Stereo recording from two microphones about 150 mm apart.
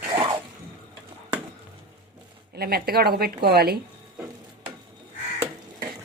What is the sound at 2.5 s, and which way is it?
A woman's voice, 90° right.